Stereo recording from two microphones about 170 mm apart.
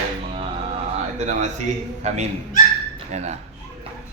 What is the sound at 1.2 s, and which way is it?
A man's voice, 45° right (ahead or behind).